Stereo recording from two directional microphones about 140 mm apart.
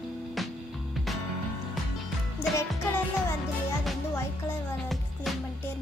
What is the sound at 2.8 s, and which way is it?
Music, 15° left (ahead or behind).